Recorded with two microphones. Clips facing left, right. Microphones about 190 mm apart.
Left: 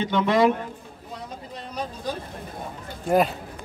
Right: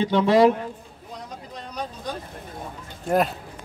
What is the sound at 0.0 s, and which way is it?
Speech, 30° right (ahead or behind).